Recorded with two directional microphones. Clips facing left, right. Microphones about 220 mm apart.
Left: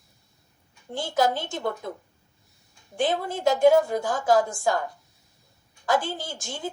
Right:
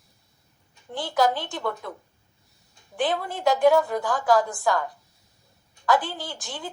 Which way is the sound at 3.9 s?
25° left (ahead or behind).